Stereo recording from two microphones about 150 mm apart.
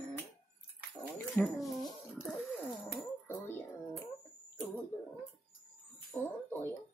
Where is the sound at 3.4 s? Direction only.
15° left (ahead or behind).